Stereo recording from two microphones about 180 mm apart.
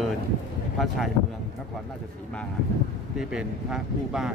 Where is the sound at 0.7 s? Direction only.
Centre (ahead or behind).